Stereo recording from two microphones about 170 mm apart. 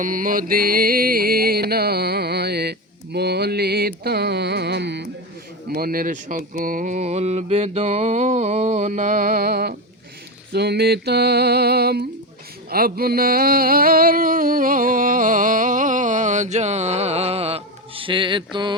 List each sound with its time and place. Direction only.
0.0 s music: 50° right (ahead or behind); by 5.0 s 85° right
5.7 s speech: 60° right (ahead or behind)
10.5 s music: 75° right (ahead or behind)
12.7 s a sound: 60° right (ahead or behind); by 18.8 s 25° right (ahead or behind)